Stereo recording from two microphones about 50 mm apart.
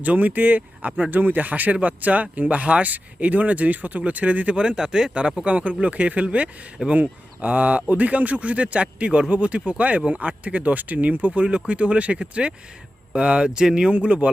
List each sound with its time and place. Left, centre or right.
0.0 s speech: right; by 5.3 s centre
5.5 s speech: right
13.9 s speech: right